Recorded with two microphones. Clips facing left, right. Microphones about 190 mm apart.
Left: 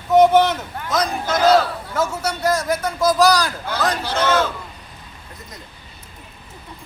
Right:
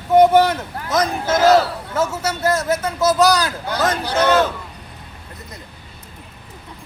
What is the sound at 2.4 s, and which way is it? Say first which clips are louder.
Speech: right 1 dB; 5° right (ahead or behind).